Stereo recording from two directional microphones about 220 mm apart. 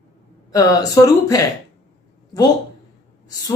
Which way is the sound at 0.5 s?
15° left (ahead or behind).